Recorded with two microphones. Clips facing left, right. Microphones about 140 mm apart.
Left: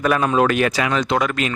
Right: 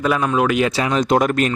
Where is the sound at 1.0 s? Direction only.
45° right (ahead or behind).